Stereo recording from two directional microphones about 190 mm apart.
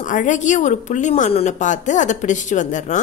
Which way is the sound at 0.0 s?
40° left (ahead or behind).